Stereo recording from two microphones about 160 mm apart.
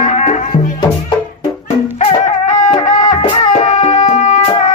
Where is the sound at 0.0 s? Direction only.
45° left (ahead or behind).